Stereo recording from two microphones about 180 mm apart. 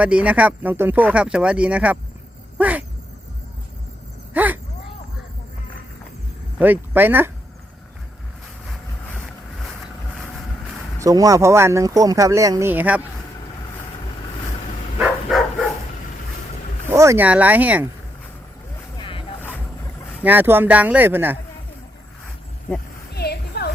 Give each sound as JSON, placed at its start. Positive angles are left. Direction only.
{"t": 0.0, "sound": "speech", "side_deg": -5}
{"t": 4.4, "sound": "speech", "side_deg": -10}
{"t": 6.6, "sound": "speech", "side_deg": -10}
{"t": 8.6, "sound": "vehicle", "side_deg": 10}
{"t": 11.0, "sound": "speech", "side_deg": -20}
{"t": 14.9, "sound": "dog", "side_deg": 0}
{"t": 16.9, "sound": "speech", "side_deg": -15}
{"t": 18.9, "sound": "music", "side_deg": 30}
{"t": 20.2, "sound": "speech", "side_deg": -10}
{"t": 23.1, "sound": "a sound", "side_deg": 60}